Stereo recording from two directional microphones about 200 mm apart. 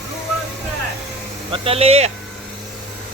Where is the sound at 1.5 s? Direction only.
30° right (ahead or behind).